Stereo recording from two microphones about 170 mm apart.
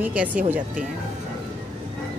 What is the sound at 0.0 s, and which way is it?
Speech, 10° right (ahead or behind).